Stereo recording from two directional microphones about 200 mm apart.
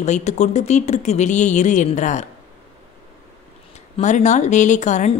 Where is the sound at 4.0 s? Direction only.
35° left (ahead or behind).